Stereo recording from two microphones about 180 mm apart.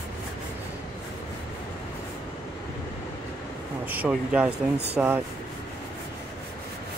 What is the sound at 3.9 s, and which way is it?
Speech, 10° right (ahead or behind).